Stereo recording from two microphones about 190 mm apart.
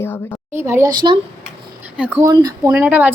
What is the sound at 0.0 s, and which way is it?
Speech, 10° left (ahead or behind).